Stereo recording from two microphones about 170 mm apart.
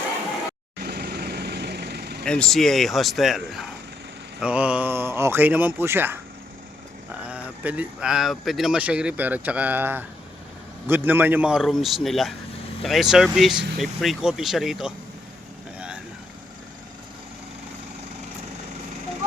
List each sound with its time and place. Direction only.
0.8 s vehicle: 65° right (ahead or behind)
2.2 s speech: 5° left (ahead or behind); by 6.1 s 15° right (ahead or behind)
7.3 s speech: 5° right (ahead or behind)